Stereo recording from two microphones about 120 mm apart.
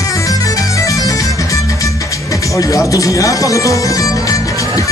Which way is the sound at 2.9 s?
30° left (ahead or behind).